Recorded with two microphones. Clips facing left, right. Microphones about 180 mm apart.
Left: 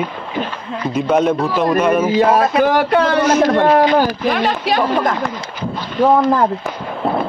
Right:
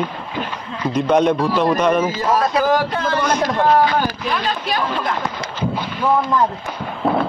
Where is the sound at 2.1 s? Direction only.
65° left (ahead or behind).